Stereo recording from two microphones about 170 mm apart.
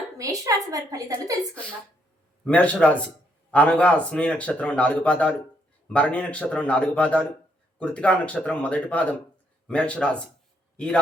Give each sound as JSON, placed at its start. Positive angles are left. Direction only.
{"t": 0.2, "sound": "a woman's voice", "side_deg": -20}
{"t": 2.4, "sound": "speech", "side_deg": 5}